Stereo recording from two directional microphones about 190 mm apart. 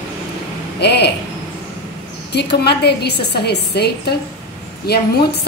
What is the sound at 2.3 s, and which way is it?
A woman's voice, 60° left (ahead or behind).